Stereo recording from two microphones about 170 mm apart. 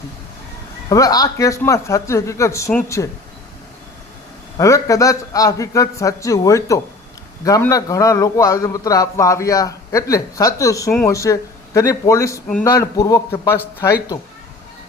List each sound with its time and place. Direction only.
0.9 s a man's voice: 20° left (ahead or behind)
4.5 s a man's voice: 20° left (ahead or behind)